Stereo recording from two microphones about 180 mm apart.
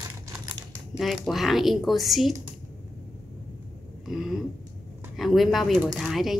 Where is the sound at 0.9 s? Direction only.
Centre (ahead or behind).